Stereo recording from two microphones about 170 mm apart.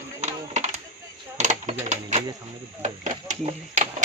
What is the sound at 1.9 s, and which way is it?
Speech, 45° right (ahead or behind).